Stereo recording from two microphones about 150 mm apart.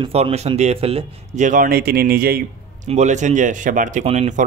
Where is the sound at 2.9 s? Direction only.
50° right (ahead or behind).